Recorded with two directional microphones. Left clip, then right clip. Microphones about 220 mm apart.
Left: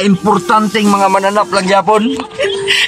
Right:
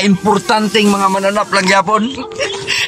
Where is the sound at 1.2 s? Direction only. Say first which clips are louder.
Left 1 dB; 20° left (ahead or behind).